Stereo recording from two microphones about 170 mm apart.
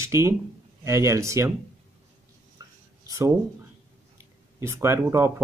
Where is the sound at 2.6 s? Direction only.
25° right (ahead or behind).